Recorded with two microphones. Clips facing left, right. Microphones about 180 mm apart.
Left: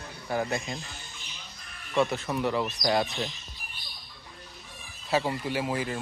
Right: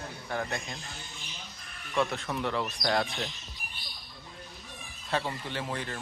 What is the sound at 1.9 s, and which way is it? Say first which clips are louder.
Speech: left 3 dB; 5° left (ahead or behind).